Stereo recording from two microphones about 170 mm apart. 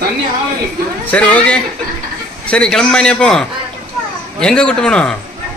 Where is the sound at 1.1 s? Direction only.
10° left (ahead or behind).